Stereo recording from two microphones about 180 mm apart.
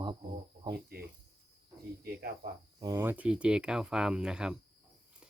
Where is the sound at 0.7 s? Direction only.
60° right (ahead or behind).